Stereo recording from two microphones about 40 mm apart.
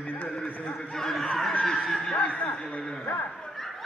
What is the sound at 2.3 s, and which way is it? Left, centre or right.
Speech, left.